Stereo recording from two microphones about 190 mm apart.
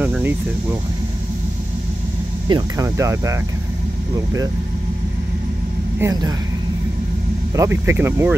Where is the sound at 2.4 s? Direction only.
20° right (ahead or behind).